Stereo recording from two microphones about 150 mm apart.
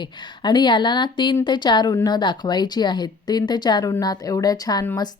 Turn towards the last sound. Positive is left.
turn(degrees=25)  # may be behind; listen again after turning